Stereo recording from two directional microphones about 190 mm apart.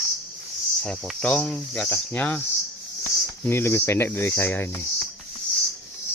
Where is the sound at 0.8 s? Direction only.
5° left (ahead or behind).